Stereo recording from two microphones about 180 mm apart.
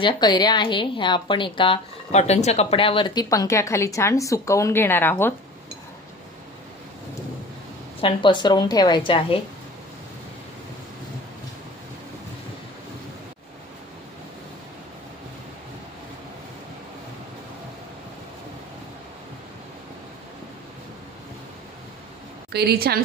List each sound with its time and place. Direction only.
0.0 s a woman's voice: 25° left (ahead or behind)
8.0 s a woman's voice: 25° left (ahead or behind)
22.5 s a woman's voice: 65° right (ahead or behind)